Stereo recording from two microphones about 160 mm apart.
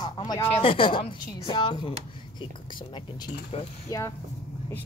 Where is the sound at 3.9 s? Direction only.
20° left (ahead or behind).